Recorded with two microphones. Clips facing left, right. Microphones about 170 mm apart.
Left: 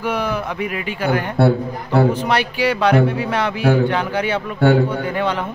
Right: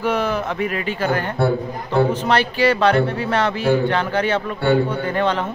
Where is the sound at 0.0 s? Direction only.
10° left (ahead or behind).